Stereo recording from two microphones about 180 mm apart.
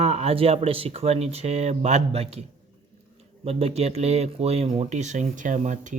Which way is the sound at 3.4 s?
35° right (ahead or behind).